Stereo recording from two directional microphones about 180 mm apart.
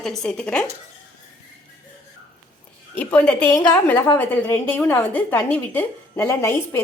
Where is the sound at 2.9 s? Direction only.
5° left (ahead or behind).